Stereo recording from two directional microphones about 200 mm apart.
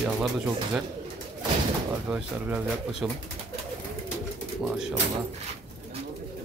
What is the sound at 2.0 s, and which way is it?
Speech, 5° right (ahead or behind).